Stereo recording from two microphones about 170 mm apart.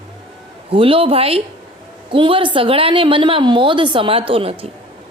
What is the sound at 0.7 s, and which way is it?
A woman's voice, 35° right (ahead or behind).